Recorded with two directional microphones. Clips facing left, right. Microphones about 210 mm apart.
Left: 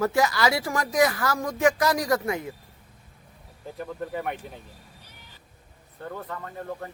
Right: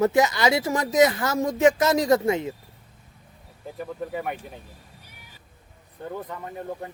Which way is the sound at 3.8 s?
Centre (ahead or behind).